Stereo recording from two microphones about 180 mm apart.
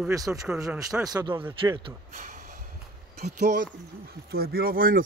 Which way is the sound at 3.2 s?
65° right (ahead or behind).